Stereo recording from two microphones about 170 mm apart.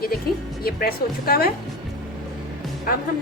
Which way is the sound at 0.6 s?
60° left (ahead or behind).